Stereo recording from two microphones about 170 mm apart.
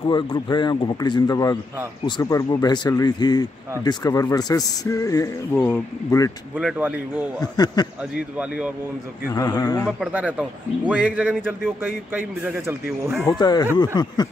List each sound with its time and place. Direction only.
0.0 s speech: 30° left (ahead or behind)
6.5 s speech: 5° right (ahead or behind)
7.3 s speech: 25° left (ahead or behind)
8.4 s speech: 5° right (ahead or behind)
9.3 s speech: 20° left (ahead or behind)
9.8 s speech: 5° right (ahead or behind)
13.4 s speech: 25° left (ahead or behind)